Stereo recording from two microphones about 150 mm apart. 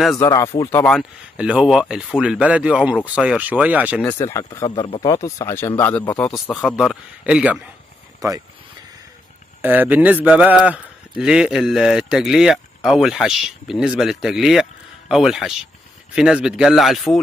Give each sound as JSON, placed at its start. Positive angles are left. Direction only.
{"t": 0.2, "sound": "speech", "side_deg": 25}
{"t": 1.3, "sound": "speech", "side_deg": -5}
{"t": 4.0, "sound": "speech", "side_deg": 15}
{"t": 6.5, "sound": "a man's voice", "side_deg": 0}
{"t": 8.2, "sound": "speech", "side_deg": -25}
{"t": 9.6, "sound": "a man's voice", "side_deg": -10}